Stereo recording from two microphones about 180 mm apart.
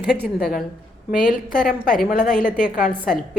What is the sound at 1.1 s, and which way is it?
A woman's voice, 50° left (ahead or behind).